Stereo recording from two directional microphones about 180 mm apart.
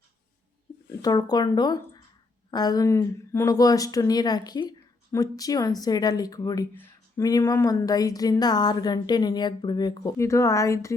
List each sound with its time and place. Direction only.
1.0 s speech: 20° left (ahead or behind)